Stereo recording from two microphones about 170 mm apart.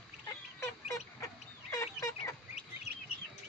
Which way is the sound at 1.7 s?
15° left (ahead or behind).